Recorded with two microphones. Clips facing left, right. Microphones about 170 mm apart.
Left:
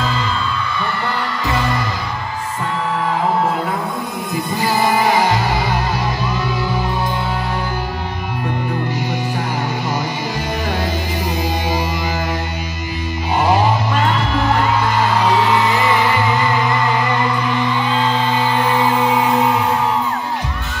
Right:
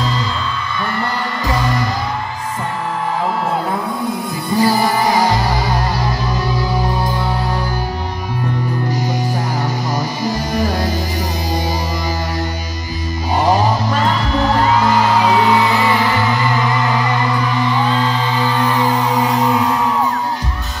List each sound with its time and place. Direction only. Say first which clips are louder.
4.6 s music: right 3 dB; 40° right (ahead or behind)